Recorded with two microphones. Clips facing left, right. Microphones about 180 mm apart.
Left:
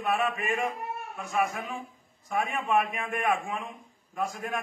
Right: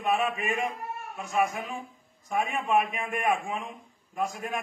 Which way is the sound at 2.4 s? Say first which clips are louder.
Right 1 dB; 25° right (ahead or behind).